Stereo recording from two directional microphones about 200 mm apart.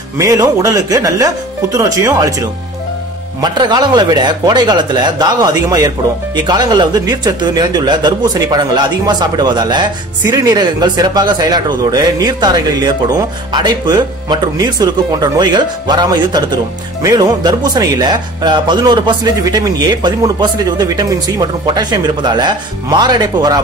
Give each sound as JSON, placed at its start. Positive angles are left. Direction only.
{"t": 0.2, "sound": "a man's voice", "side_deg": -15}